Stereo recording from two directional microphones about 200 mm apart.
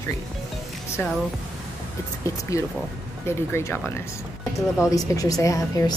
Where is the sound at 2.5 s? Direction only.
15° left (ahead or behind).